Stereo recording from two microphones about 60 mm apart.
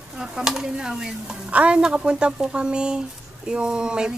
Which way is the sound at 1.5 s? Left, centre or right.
Right.